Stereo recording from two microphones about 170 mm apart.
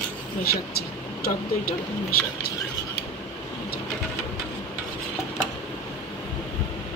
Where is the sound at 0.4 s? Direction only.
65° left (ahead or behind).